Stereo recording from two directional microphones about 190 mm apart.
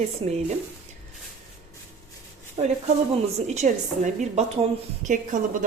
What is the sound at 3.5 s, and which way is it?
A woman's voice, 40° right (ahead or behind).